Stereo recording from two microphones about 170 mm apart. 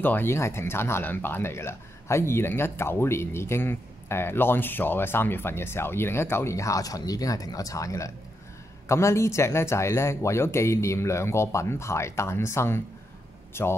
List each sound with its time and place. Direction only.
0.0 s speech: 10° left (ahead or behind)